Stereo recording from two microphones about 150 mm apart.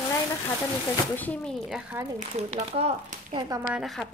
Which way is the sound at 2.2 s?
50° right (ahead or behind).